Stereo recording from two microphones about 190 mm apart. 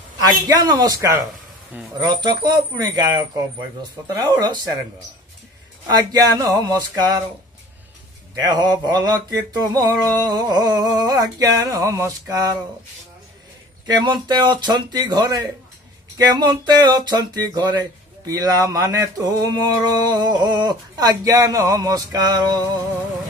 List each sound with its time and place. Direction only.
0.2 s speech: 20° right (ahead or behind)
4.1 s speech: 20° right (ahead or behind)
5.9 s speech: 20° right (ahead or behind)
8.4 s speech: 20° right (ahead or behind)
13.8 s speech: 25° right (ahead or behind)